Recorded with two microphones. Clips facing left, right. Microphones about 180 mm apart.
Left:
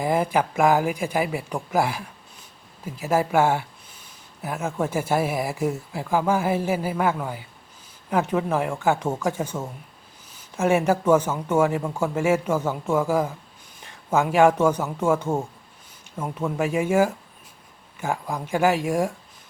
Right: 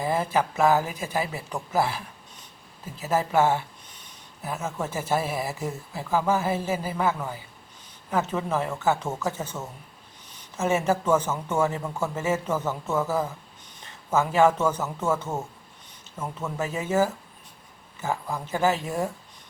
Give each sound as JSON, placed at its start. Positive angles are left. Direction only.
{"t": 0.0, "sound": "speech", "side_deg": 15}